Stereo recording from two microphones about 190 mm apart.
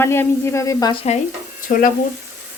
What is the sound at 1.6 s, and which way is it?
Speech, 45° left (ahead or behind).